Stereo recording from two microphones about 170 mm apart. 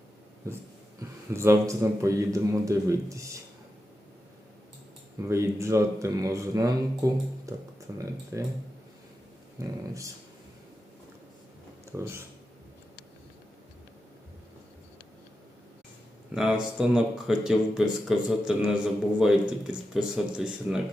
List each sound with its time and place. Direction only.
0.4 s speech: 15° right (ahead or behind)
5.3 s speech: 15° right (ahead or behind)
9.6 s speech: 20° right (ahead or behind)
11.9 s speech: 15° right (ahead or behind)
16.3 s speech: 5° right (ahead or behind)